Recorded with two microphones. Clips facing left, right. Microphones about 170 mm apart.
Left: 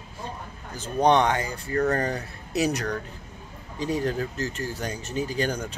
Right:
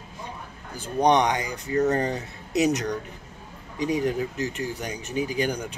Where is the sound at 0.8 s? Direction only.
15° right (ahead or behind).